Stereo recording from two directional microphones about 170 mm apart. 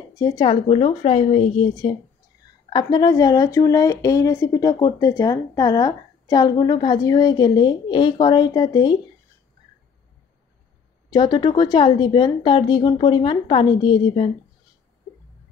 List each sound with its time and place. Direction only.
0.1 s speech: 25° left (ahead or behind)
11.1 s speech: 25° left (ahead or behind)